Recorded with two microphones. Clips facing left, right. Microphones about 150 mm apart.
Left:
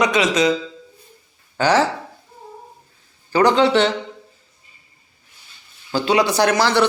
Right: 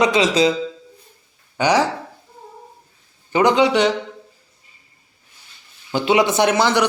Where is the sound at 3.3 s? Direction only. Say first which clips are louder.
Even; 20° right (ahead or behind).